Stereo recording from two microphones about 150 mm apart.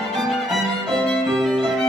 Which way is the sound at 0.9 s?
Centre (ahead or behind).